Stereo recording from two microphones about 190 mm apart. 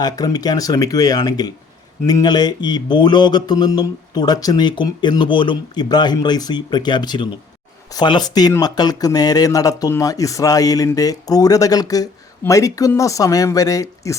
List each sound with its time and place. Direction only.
0.0 s mantra: 20° left (ahead or behind)
12.5 s speech: 15° left (ahead or behind)